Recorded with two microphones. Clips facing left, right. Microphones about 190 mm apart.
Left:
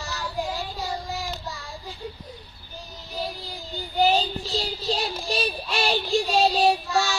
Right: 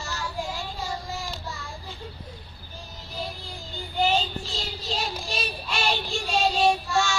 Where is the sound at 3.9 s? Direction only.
35° left (ahead or behind).